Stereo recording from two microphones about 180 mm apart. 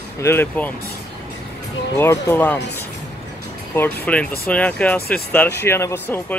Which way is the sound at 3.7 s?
10° left (ahead or behind).